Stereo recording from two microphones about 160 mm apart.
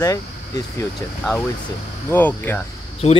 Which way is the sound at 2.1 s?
10° left (ahead or behind).